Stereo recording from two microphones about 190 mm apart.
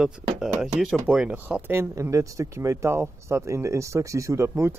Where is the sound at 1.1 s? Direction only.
5° right (ahead or behind).